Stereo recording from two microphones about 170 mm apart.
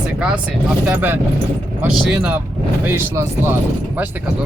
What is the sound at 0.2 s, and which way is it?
Speech, 5° right (ahead or behind).